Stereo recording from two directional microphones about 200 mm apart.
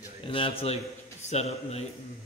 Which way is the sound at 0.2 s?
25° left (ahead or behind).